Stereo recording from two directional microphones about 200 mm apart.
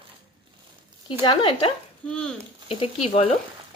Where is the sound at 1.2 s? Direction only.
25° left (ahead or behind).